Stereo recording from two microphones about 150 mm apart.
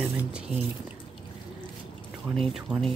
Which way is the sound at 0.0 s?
10° right (ahead or behind).